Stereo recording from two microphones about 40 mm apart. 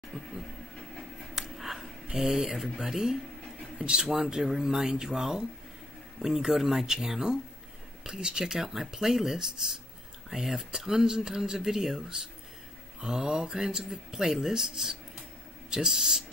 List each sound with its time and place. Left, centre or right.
0.1 s a sound: centre
2.1 s speech: centre
3.8 s speech: right